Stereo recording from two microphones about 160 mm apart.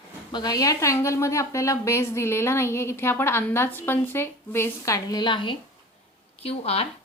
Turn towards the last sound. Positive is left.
turn(degrees=40)  # may be behind; listen again after turning